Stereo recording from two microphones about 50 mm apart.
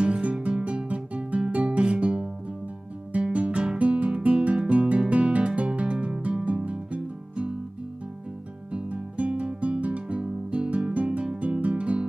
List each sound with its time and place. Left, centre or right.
0.0 s guitar: right
5.1 s music: right
8.7 s guitar: right